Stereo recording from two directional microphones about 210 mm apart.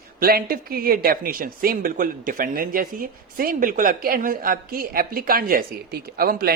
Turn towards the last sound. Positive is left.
turn(degrees=-45)  # may be behind; listen again after turning